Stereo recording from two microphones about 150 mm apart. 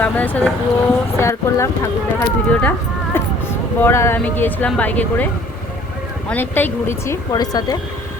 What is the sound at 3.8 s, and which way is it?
Speech, 15° left (ahead or behind).